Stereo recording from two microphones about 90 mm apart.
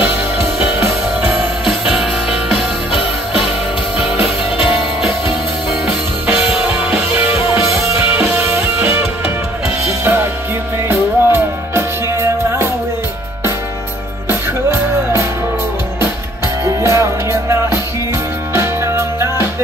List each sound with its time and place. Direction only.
1.7 s music: centre (ahead or behind)
6.2 s music: 15° right (ahead or behind)
16.6 s music: 30° right (ahead or behind)